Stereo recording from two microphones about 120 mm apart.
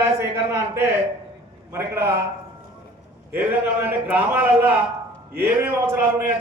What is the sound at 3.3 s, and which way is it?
A man's voice, 15° right (ahead or behind).